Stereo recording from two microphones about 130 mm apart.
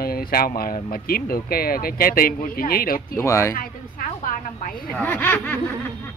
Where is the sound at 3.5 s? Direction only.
90° left.